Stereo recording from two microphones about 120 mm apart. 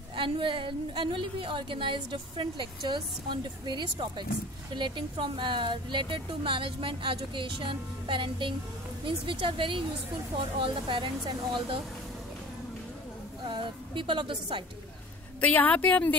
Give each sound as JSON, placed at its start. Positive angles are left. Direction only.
{"t": 0.1, "sound": "a woman's voice", "side_deg": -45}
{"t": 13.5, "sound": "speech", "side_deg": -45}
{"t": 15.4, "sound": "a woman's voice", "side_deg": 15}